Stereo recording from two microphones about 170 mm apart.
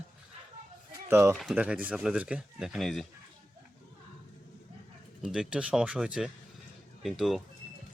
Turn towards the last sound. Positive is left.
turn(degrees=0)  # may be behind; listen again after turning